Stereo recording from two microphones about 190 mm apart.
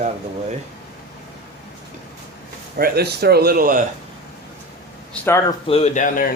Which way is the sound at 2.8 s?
55° right (ahead or behind).